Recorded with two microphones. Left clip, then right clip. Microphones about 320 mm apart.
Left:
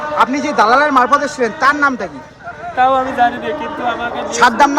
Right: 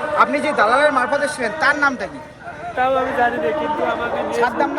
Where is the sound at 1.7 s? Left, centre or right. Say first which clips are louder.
Left 3 dB; left.